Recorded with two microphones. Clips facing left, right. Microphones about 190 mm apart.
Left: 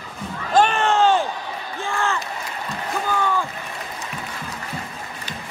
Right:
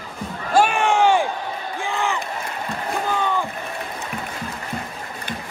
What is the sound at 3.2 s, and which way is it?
Rowboat, 20° right (ahead or behind).